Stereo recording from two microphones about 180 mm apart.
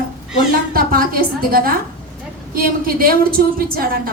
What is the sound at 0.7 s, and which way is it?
A woman's voice, 55° right (ahead or behind).